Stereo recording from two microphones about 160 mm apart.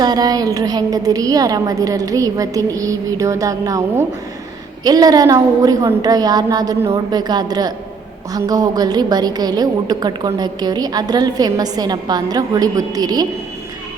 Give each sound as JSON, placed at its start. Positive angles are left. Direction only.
{"t": 0.0, "sound": "a woman's voice", "side_deg": -25}